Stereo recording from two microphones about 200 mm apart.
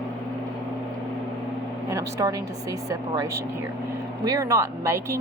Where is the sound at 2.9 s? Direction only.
15° right (ahead or behind).